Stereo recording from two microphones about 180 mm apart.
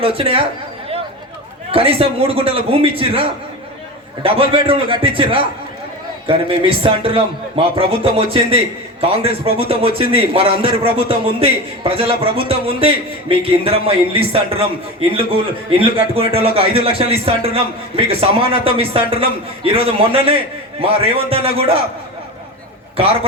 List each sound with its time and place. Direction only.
0.0 s a man's voice: 30° right (ahead or behind)
1.7 s a man's voice: 30° right (ahead or behind)